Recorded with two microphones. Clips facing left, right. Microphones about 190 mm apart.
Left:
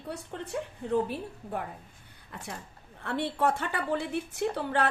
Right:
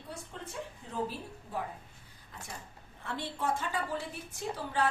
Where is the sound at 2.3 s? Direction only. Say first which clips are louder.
Left 5 dB; 70° left (ahead or behind).